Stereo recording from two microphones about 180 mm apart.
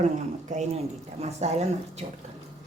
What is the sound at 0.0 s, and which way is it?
A woman's voice, 40° right (ahead or behind).